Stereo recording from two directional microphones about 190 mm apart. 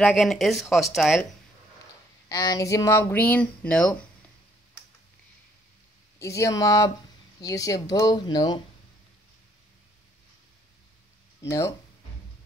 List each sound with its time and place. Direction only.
0.0 s speech: centre (ahead or behind)
2.2 s speech: 20° left (ahead or behind)
6.1 s speech: 15° left (ahead or behind)
11.4 s speech: 15° left (ahead or behind)